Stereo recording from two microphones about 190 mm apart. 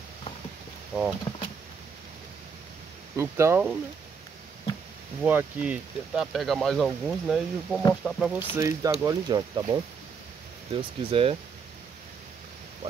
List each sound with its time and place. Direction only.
0.9 s speech: 5° right (ahead or behind)
3.2 s speech: 15° right (ahead or behind)
5.2 s speech: 10° right (ahead or behind)
8.5 s speech: 15° right (ahead or behind)